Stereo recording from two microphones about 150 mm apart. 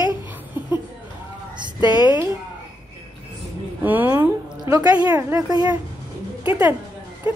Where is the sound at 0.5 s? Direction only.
15° right (ahead or behind).